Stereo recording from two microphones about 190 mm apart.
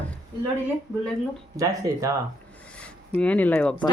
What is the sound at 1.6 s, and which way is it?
Speech, 20° right (ahead or behind).